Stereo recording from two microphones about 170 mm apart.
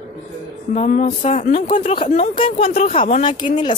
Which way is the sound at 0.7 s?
45° left (ahead or behind).